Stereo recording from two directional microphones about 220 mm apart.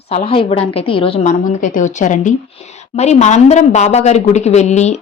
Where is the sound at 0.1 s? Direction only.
25° left (ahead or behind).